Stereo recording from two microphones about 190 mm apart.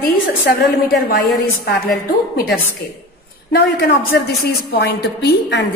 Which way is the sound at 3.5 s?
55° left (ahead or behind).